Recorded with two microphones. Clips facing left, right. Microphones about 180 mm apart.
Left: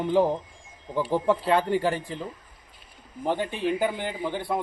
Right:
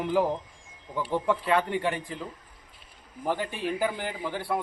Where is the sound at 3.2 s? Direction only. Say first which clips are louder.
Left 3 dB; 20° left (ahead or behind).